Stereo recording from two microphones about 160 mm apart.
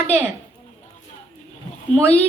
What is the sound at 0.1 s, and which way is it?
Speech, 40° left (ahead or behind).